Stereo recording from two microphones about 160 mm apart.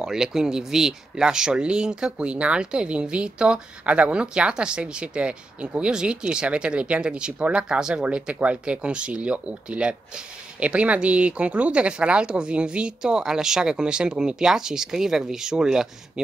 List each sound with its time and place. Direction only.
0.0 s speech: 5° right (ahead or behind)